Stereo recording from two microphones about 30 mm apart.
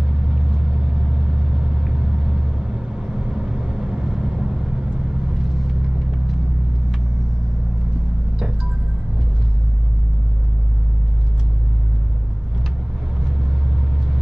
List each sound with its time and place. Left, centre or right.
0.3 s vehicle: centre